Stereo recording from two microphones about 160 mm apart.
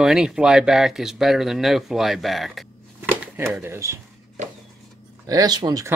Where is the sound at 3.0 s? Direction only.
15° right (ahead or behind).